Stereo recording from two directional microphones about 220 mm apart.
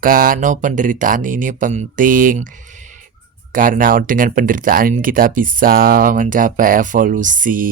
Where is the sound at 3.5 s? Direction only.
40° right (ahead or behind).